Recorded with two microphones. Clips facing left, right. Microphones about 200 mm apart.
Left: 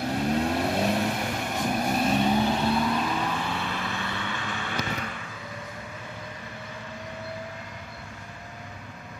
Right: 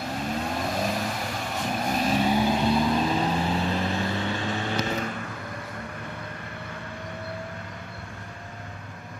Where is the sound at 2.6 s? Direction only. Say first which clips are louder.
Right 2 dB; 25° right (ahead or behind).